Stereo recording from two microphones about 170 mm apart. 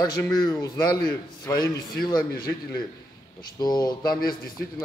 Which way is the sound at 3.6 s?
25° left (ahead or behind).